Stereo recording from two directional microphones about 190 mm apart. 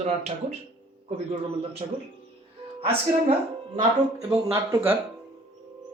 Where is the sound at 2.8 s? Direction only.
30° right (ahead or behind).